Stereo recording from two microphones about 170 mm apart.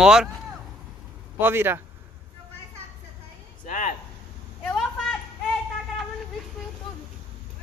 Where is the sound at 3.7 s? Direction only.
50° left (ahead or behind).